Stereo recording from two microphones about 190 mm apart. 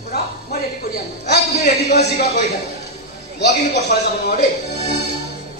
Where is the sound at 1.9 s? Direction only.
35° left (ahead or behind).